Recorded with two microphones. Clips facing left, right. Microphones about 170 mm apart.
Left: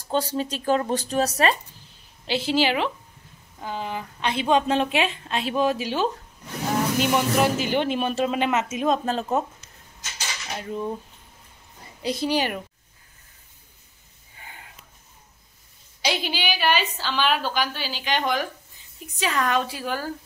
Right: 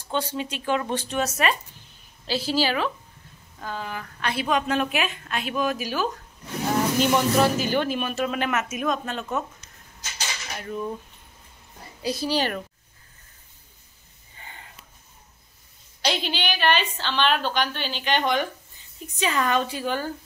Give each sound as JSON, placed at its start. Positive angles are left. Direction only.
{"t": 0.1, "sound": "speech", "side_deg": 40}
{"t": 2.2, "sound": "a woman's voice", "side_deg": 20}
{"t": 7.0, "sound": "a woman's voice", "side_deg": 10}
{"t": 7.5, "sound": "a woman's voice", "side_deg": 20}
{"t": 10.6, "sound": "a woman's voice", "side_deg": 20}
{"t": 12.0, "sound": "a woman's voice", "side_deg": 20}
{"t": 14.4, "sound": "a sound", "side_deg": 10}
{"t": 16.0, "sound": "a woman's voice", "side_deg": 10}